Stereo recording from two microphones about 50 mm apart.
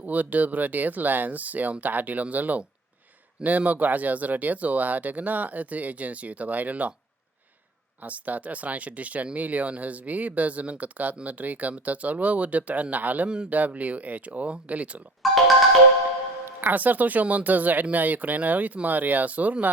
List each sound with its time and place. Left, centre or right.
0.0 s speech: right
8.0 s speech: right
13.2 s speech: centre
13.5 s speech: right
15.2 s music: centre
16.5 s speech: right